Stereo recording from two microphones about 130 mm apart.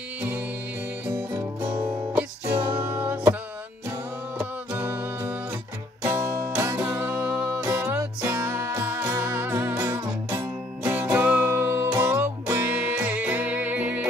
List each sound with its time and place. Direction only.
1.0 s music: 15° right (ahead or behind)
4.4 s music: 15° right (ahead or behind)